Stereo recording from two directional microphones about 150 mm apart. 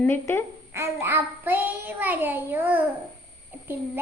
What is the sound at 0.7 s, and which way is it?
Child singing, 15° right (ahead or behind).